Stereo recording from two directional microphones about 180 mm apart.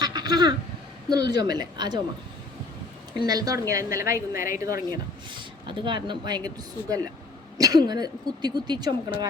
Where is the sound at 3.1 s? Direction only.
20° right (ahead or behind).